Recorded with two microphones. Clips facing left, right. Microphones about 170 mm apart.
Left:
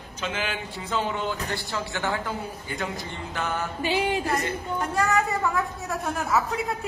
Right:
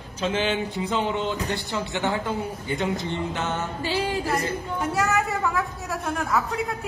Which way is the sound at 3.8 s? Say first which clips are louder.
Left 2 dB; 20° left (ahead or behind).